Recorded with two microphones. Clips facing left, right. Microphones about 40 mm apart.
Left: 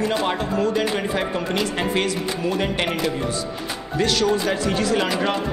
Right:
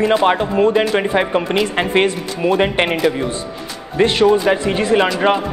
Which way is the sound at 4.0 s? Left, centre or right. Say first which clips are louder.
Right 7 dB; right.